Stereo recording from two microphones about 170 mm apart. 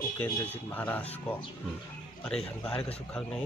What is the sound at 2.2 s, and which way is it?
Speech, 5° left (ahead or behind).